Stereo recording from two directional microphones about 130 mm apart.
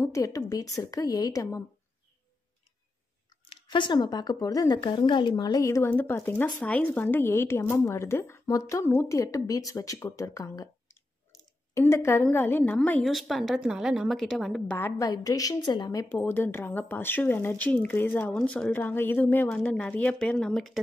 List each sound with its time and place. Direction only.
0.0 s speech: 25° left (ahead or behind)
3.4 s a woman's voice: 40° left (ahead or behind); by 13.0 s 10° left (ahead or behind)
13.0 s a woman's voice: centre (ahead or behind)
14.7 s a woman's voice: 20° left (ahead or behind); by 20.8 s centre (ahead or behind)